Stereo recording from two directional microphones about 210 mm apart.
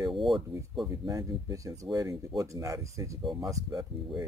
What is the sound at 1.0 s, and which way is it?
Speech, 15° right (ahead or behind).